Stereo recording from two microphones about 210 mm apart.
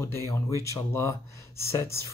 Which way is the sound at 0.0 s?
10° left (ahead or behind).